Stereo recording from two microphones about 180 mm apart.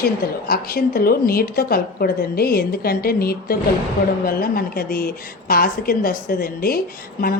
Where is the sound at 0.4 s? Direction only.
55° left (ahead or behind).